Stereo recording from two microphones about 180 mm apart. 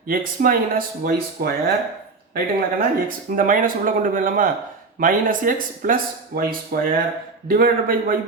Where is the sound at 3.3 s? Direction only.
50° right (ahead or behind).